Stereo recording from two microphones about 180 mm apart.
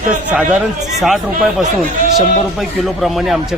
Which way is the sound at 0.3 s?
5° right (ahead or behind).